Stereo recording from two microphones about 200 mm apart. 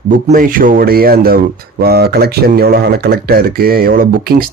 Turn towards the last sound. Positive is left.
turn(degrees=-45)  # may be behind; listen again after turning